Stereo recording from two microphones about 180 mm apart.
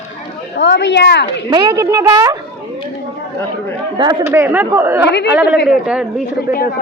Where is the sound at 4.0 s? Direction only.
25° right (ahead or behind).